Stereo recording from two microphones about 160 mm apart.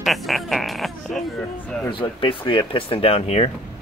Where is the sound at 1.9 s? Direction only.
30° left (ahead or behind).